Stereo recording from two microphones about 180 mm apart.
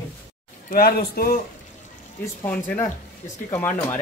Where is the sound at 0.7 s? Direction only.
55° left (ahead or behind).